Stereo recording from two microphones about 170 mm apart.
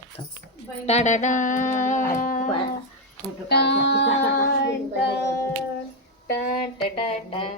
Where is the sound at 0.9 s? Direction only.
45° left (ahead or behind).